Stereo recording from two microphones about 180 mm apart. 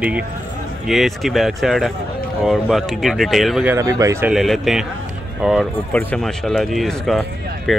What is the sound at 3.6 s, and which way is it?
Speech, 15° right (ahead or behind).